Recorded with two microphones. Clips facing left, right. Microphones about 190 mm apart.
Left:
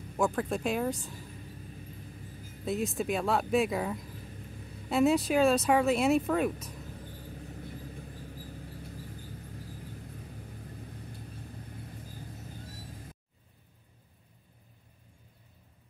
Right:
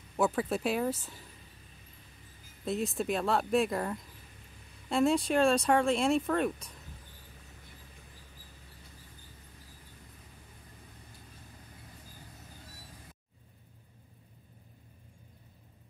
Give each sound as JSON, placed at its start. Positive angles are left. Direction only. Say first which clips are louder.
{"t": 0.2, "sound": "speech", "louder": "even", "side_deg": -5}
{"t": 2.6, "sound": "speech", "louder": "left 1 dB", "side_deg": 0}
{"t": 7.1, "sound": "mouse", "louder": "left 12 dB", "side_deg": 55}